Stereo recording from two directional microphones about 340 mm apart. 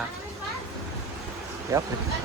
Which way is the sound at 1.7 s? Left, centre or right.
Centre.